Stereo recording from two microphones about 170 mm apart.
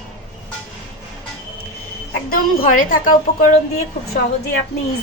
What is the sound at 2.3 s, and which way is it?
A woman's voice, 55° left (ahead or behind).